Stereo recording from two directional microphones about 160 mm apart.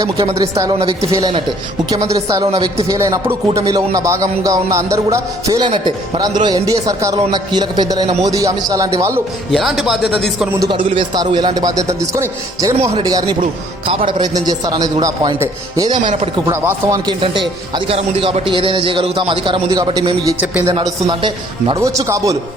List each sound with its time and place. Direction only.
0.3 s a man's voice: 20° right (ahead or behind)
9.5 s a man's voice: centre (ahead or behind)
10.6 s a man's voice: 30° right (ahead or behind); by 17.0 s 15° right (ahead or behind)
17.1 s speech: 30° right (ahead or behind)
20.4 s speech: 10° right (ahead or behind)
20.7 s a man's voice: 30° right (ahead or behind)
21.8 s a man's voice: 20° right (ahead or behind)